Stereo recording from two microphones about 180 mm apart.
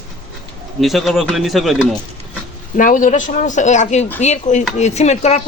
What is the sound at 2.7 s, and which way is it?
Speech, 45° left (ahead or behind).